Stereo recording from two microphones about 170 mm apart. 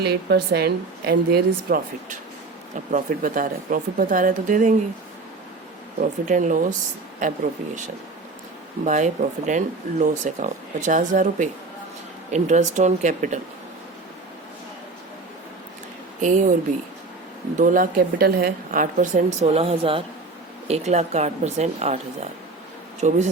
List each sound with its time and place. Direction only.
0.0 s a woman's voice: 70° right (ahead or behind)
2.9 s speech: 50° right (ahead or behind)
6.0 s speech: 45° right (ahead or behind)
8.8 s speech: 45° right (ahead or behind)
16.2 s speech: 45° right (ahead or behind)
17.6 s speech: 50° right (ahead or behind)